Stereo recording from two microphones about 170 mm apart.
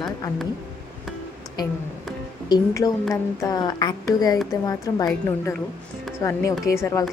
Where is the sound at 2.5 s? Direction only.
25° left (ahead or behind).